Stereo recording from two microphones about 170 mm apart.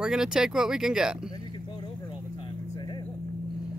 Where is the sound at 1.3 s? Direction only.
25° left (ahead or behind).